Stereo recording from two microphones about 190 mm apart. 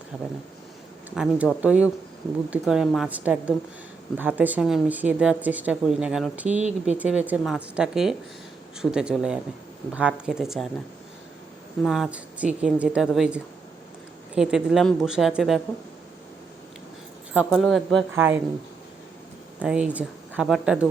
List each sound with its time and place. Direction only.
0.1 s a woman's voice: 5° right (ahead or behind)
6.5 s speech: 35° right (ahead or behind)
6.9 s a woman's voice: 5° right (ahead or behind)
11.8 s a woman's voice: centre (ahead or behind)
17.3 s a woman's voice: centre (ahead or behind)
18.1 s speech: 10° right (ahead or behind)
19.5 s speech: 5° right (ahead or behind)